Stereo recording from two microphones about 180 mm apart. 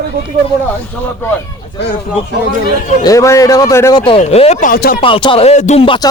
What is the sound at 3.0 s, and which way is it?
Speech, 20° left (ahead or behind).